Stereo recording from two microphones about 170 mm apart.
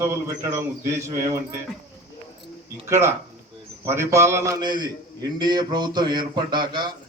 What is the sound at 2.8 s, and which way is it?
A man's voice, 15° right (ahead or behind).